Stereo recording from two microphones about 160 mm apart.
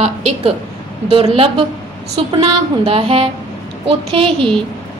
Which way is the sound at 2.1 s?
35° right (ahead or behind).